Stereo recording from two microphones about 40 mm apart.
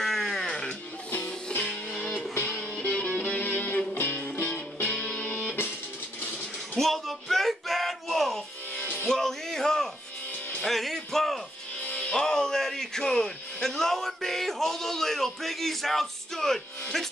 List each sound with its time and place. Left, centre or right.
0.0 s music: centre
1.1 s music: left
1.6 s music: centre
2.8 s music: left
6.8 s music: centre
12.0 s music: centre